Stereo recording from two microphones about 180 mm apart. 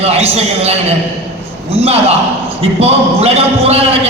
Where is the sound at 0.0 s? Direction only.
35° right (ahead or behind).